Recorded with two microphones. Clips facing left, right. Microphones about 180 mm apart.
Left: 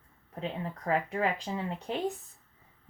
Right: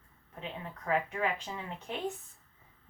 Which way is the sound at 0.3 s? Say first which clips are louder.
Left 6 dB; 35° left (ahead or behind).